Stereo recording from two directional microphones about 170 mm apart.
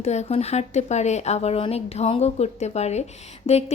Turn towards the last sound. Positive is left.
turn(degrees=40)  # may be behind; listen again after turning